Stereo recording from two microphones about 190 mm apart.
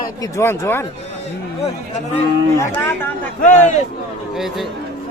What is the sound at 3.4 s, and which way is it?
Speech, 40° left (ahead or behind).